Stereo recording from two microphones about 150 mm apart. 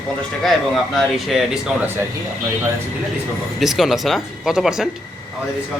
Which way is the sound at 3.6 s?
Centre (ahead or behind).